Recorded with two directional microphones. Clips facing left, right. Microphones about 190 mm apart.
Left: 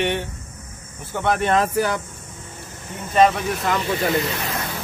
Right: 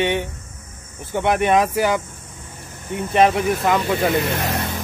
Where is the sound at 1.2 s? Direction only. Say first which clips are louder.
Right 2 dB; 15° right (ahead or behind).